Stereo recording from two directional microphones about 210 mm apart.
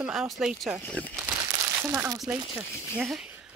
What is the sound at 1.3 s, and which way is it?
Crumpling, 10° right (ahead or behind).